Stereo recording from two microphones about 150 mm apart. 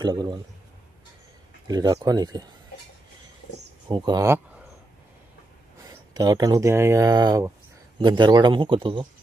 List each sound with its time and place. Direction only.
0.0 s speech: 30° right (ahead or behind)
1.6 s speech: 25° right (ahead or behind)
3.8 s speech: 30° right (ahead or behind)
6.1 s speech: 25° right (ahead or behind)